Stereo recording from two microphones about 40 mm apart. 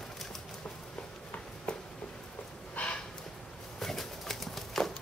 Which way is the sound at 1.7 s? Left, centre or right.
Left.